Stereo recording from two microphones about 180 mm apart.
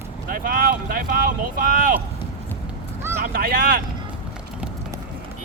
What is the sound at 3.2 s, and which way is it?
Speech, 55° right (ahead or behind).